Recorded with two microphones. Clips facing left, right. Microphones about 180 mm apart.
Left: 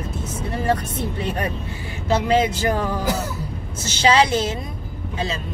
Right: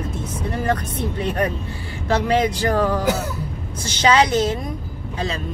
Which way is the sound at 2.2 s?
25° left (ahead or behind).